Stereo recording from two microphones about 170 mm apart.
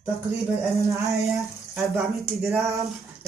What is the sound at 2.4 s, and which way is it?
Speech, 15° right (ahead or behind).